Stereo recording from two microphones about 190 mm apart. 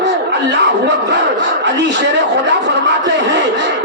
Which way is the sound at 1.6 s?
70° right (ahead or behind).